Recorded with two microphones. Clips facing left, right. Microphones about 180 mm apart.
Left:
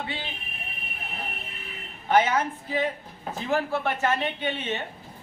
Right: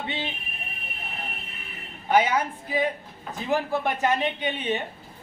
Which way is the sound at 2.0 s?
10° right (ahead or behind).